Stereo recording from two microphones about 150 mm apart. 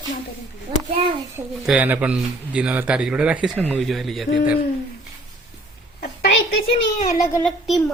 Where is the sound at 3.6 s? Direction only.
10° left (ahead or behind).